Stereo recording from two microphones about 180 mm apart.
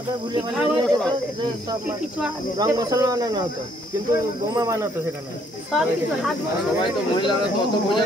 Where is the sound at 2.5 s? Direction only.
20° right (ahead or behind).